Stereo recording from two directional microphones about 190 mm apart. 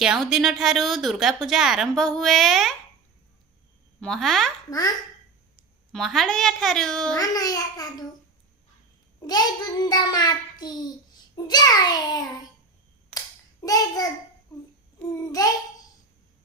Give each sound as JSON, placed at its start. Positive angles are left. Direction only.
{"t": 0.0, "sound": "a woman's voice", "side_deg": -5}
{"t": 4.0, "sound": "a woman's voice", "side_deg": 0}
{"t": 5.9, "sound": "a woman's voice", "side_deg": 0}
{"t": 7.2, "sound": "a child's voice", "side_deg": 20}
{"t": 9.2, "sound": "a child's voice", "side_deg": 20}
{"t": 13.1, "sound": "hands", "side_deg": 20}
{"t": 15.3, "sound": "a child's voice", "side_deg": 20}